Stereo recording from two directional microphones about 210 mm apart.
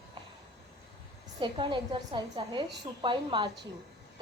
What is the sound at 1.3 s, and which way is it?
A woman's voice, 25° right (ahead or behind).